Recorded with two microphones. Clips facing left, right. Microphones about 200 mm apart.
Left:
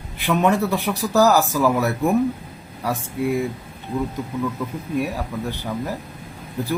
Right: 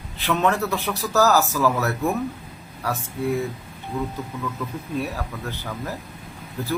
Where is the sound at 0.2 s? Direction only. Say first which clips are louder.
Left 3 dB; 15° left (ahead or behind).